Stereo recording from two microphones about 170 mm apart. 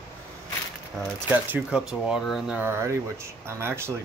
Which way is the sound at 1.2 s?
10° right (ahead or behind).